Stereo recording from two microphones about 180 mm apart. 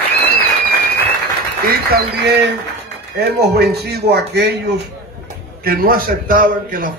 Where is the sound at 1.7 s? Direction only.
60° right (ahead or behind).